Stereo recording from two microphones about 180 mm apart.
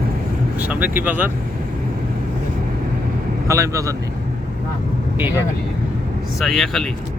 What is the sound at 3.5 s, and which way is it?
Speech, 15° right (ahead or behind).